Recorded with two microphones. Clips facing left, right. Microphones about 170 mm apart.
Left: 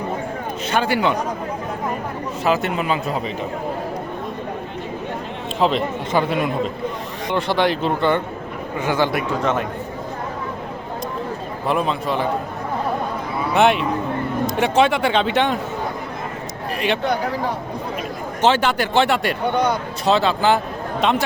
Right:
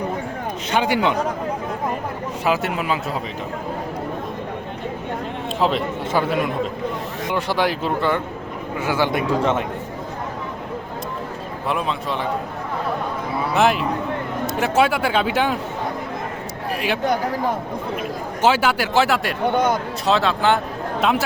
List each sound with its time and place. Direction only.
0.7 s speech: 15° right (ahead or behind)
2.4 s speech: 10° right (ahead or behind)
5.5 s speech: 5° right (ahead or behind)
9.1 s a man's voice: 25° right (ahead or behind)
11.7 s speech: centre (ahead or behind)
13.5 s speech: centre (ahead or behind)
18.4 s speech: 5° right (ahead or behind)
19.5 s speech: 45° right (ahead or behind)
20.1 s speech: centre (ahead or behind)